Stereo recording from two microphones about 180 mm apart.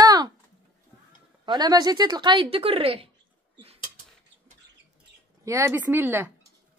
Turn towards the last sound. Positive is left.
turn(degrees=-10)  # may be behind; listen again after turning